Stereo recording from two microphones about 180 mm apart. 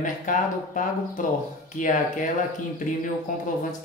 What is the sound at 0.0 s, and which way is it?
Speech, 45° left (ahead or behind).